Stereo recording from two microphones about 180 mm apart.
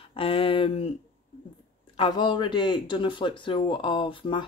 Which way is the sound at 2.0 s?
25° left (ahead or behind).